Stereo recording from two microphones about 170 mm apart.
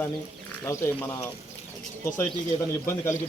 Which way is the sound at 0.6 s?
15° left (ahead or behind).